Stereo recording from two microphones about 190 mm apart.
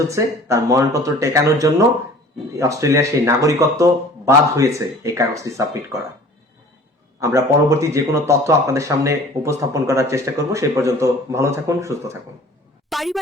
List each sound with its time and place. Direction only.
0.0 s a man's voice: 15° right (ahead or behind)
7.2 s a man's voice: 15° right (ahead or behind)
12.9 s speech: centre (ahead or behind)